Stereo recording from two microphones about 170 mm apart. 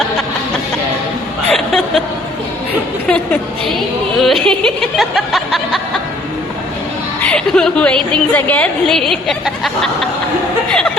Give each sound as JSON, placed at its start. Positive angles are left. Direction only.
{"t": 1.5, "sound": "chuckle", "side_deg": 0}
{"t": 4.2, "sound": "a sound", "side_deg": 0}
{"t": 7.2, "sound": "a woman's voice", "side_deg": 5}
{"t": 10.7, "sound": "chuckle", "side_deg": 5}